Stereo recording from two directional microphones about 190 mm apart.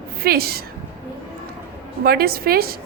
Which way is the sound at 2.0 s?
55° right (ahead or behind).